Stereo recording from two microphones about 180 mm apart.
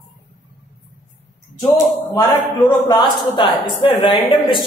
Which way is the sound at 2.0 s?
10° left (ahead or behind).